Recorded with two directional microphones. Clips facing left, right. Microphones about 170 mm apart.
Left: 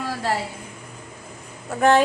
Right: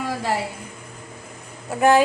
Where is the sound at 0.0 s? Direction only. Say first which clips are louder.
Right 1 dB; 15° right (ahead or behind).